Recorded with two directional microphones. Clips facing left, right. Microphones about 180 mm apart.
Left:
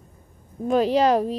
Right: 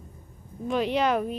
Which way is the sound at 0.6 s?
40° left (ahead or behind).